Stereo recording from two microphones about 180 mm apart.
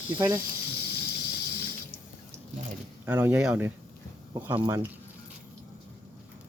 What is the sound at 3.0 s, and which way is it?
Speech, 10° right (ahead or behind).